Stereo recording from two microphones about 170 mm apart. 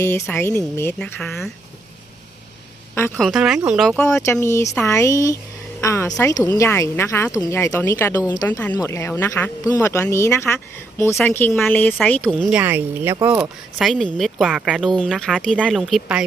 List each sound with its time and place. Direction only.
0.0 s speech: 15° left (ahead or behind)
3.2 s speech: centre (ahead or behind)
4.3 s speech: 15° left (ahead or behind); by 16.2 s 5° right (ahead or behind)